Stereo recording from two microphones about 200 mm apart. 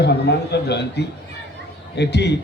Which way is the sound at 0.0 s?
55° left (ahead or behind).